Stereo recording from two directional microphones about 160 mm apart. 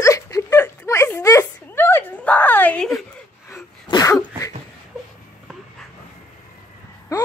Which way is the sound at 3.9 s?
20° left (ahead or behind).